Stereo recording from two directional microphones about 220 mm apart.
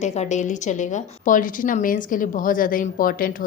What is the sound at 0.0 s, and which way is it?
A woman's voice, 30° left (ahead or behind).